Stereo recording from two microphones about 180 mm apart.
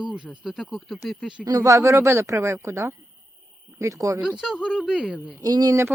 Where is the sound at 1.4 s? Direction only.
20° right (ahead or behind).